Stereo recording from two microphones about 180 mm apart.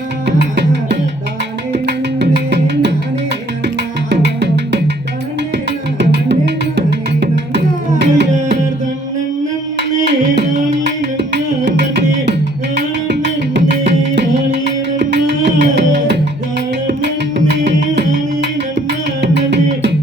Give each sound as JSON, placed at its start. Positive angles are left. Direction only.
{"t": 0.3, "sound": "music", "side_deg": -70}
{"t": 4.1, "sound": "music", "side_deg": -70}
{"t": 6.0, "sound": "music", "side_deg": -75}
{"t": 10.8, "sound": "music", "side_deg": -70}